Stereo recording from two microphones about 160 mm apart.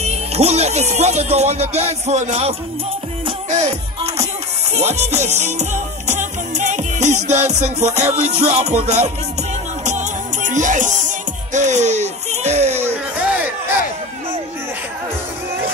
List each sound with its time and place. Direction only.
0.0 s speech: 40° right (ahead or behind)
3.4 s music: 45° right (ahead or behind)
8.2 s speech: 45° right (ahead or behind)
9.8 s music: 50° right (ahead or behind)
12.7 s music: 15° right (ahead or behind)